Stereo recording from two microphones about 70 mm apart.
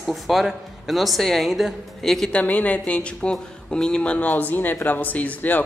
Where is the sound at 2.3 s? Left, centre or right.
Left.